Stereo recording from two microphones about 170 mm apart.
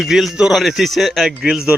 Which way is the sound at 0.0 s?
Centre (ahead or behind).